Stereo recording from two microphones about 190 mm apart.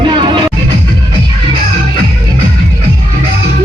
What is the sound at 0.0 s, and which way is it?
Music, 25° right (ahead or behind).